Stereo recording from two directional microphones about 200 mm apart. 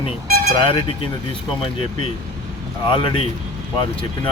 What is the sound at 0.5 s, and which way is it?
Speech, 25° left (ahead or behind).